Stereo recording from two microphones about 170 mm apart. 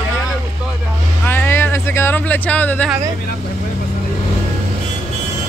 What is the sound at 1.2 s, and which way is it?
Speech, 10° left (ahead or behind).